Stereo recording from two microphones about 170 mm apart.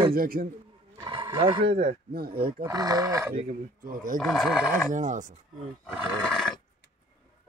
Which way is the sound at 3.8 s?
55° right (ahead or behind).